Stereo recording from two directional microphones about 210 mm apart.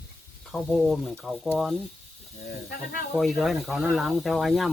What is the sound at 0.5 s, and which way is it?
Speech, centre (ahead or behind).